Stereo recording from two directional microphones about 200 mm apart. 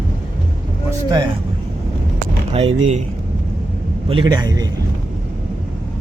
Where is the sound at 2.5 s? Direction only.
30° right (ahead or behind).